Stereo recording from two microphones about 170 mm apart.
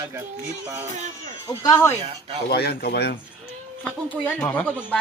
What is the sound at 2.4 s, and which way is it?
Speech, 70° left (ahead or behind).